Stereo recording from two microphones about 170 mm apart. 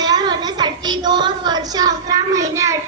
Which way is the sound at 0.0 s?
25° right (ahead or behind).